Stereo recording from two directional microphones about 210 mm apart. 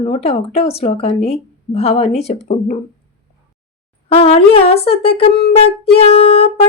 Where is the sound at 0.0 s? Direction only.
30° left (ahead or behind).